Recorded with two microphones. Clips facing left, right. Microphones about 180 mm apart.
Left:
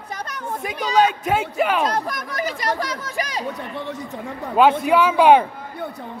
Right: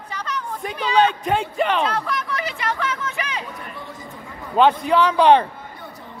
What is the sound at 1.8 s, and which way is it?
Speech, 40° left (ahead or behind).